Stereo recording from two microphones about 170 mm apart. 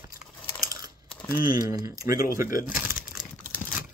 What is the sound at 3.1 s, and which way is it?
Crumpling, 5° right (ahead or behind).